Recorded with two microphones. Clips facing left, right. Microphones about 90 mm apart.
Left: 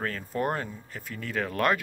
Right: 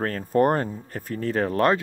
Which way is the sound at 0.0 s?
45° right (ahead or behind).